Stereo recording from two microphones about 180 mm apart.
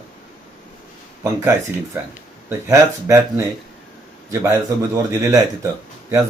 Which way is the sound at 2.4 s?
15° right (ahead or behind).